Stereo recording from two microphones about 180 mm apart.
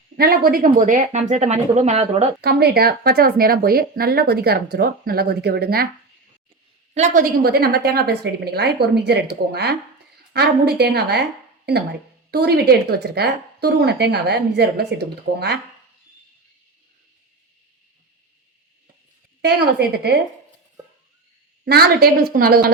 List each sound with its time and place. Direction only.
0.2 s speech: 55° right (ahead or behind); by 2.2 s 35° right (ahead or behind)
2.4 s speech: 60° right (ahead or behind)
6.9 s speech: 45° right (ahead or behind); by 15.5 s 65° right (ahead or behind)
19.4 s speech: 65° right (ahead or behind)
21.6 s speech: 60° right (ahead or behind)